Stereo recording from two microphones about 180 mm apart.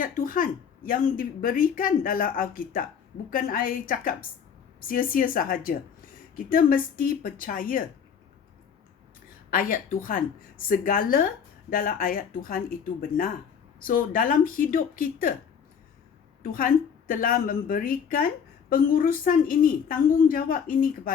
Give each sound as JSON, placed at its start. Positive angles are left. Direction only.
{"t": 0.0, "sound": "a woman's voice", "side_deg": 50}
{"t": 9.5, "sound": "a woman's voice", "side_deg": 50}
{"t": 16.4, "sound": "a woman's voice", "side_deg": 50}